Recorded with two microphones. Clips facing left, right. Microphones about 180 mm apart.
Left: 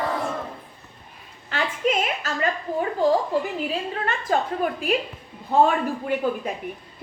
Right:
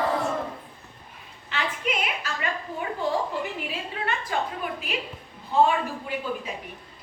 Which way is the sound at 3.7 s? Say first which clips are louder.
Left 4 dB; 45° left (ahead or behind).